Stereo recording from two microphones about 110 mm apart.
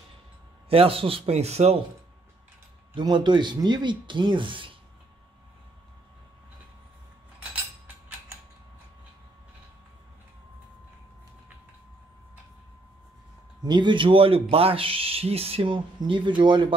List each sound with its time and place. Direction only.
0.7 s speech: 60° right (ahead or behind); by 1.8 s 75° right (ahead or behind)
2.9 s speech: 45° right (ahead or behind)
13.6 s speech: 45° right (ahead or behind)